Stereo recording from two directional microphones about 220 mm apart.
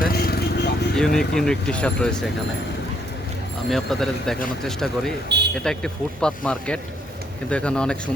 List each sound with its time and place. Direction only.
0.0 s vehicle: 45° left (ahead or behind)
0.9 s speech: 5° left (ahead or behind)
3.7 s speech: centre (ahead or behind)